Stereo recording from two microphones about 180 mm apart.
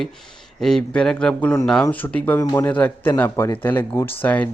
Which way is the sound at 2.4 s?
20° left (ahead or behind).